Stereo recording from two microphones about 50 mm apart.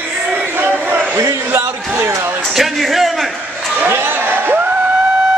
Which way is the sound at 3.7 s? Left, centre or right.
Right.